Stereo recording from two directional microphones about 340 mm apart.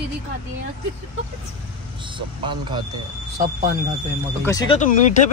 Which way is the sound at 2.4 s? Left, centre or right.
Centre.